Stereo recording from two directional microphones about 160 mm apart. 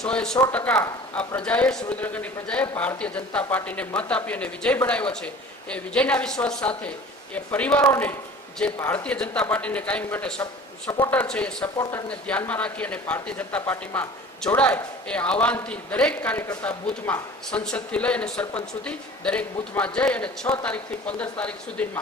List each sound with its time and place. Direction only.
0.0 s speech: 5° left (ahead or behind)
11.8 s speech: 20° left (ahead or behind)
12.0 s speech: 5° left (ahead or behind)